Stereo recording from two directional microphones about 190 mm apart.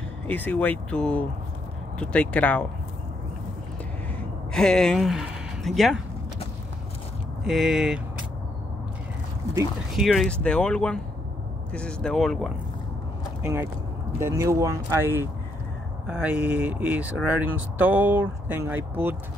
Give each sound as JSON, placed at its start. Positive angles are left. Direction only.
{"t": 0.3, "sound": "speech", "side_deg": 10}
{"t": 4.5, "sound": "speech", "side_deg": 5}
{"t": 7.4, "sound": "speech", "side_deg": 0}
{"t": 9.9, "sound": "speech", "side_deg": 0}
{"t": 13.4, "sound": "speech", "side_deg": -10}